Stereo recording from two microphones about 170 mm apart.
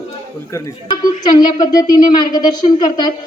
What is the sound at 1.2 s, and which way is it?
A woman's voice, 25° left (ahead or behind).